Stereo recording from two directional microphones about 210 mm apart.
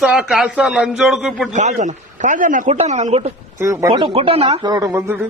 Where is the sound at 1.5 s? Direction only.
35° right (ahead or behind).